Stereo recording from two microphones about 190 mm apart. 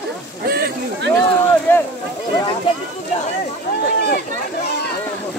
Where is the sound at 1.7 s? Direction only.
10° left (ahead or behind).